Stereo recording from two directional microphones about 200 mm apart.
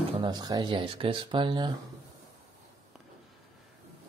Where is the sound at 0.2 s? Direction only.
20° right (ahead or behind).